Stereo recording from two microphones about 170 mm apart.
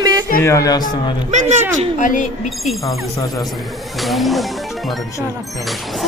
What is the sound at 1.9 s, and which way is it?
Speech, 45° left (ahead or behind).